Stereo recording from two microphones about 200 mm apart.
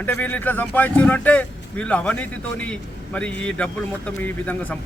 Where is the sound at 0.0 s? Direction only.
10° left (ahead or behind).